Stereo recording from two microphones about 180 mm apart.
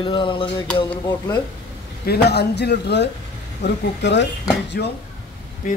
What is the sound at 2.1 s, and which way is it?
A man's voice, 65° left (ahead or behind).